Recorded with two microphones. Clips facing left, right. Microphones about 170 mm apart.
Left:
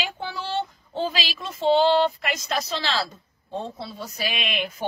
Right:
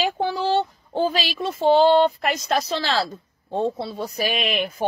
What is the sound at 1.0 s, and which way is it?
Speech, 40° right (ahead or behind).